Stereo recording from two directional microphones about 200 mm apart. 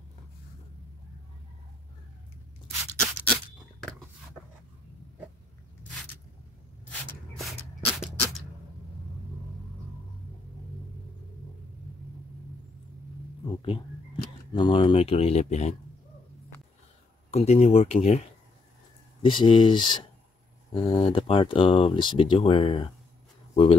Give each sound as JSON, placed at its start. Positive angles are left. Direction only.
{"t": 7.3, "sound": "a sound", "side_deg": 0}
{"t": 14.5, "sound": "speech", "side_deg": 25}
{"t": 17.3, "sound": "speech", "side_deg": 30}
{"t": 19.2, "sound": "speech", "side_deg": 25}